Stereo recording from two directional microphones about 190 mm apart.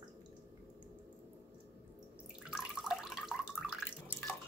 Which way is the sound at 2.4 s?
5° right (ahead or behind).